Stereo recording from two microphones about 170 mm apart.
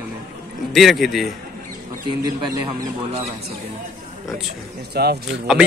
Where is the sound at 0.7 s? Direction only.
Centre (ahead or behind).